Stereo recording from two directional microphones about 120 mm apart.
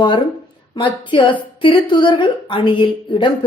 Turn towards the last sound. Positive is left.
turn(degrees=45)  # may be behind; listen again after turning